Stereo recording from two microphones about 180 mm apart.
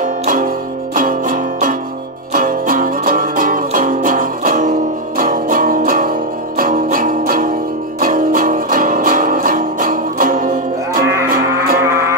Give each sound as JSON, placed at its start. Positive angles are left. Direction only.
{"t": 0.0, "sound": "music", "side_deg": -45}
{"t": 11.8, "sound": "music", "side_deg": -15}